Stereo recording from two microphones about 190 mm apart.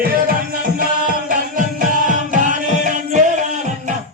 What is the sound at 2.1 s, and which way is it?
Music, 40° right (ahead or behind).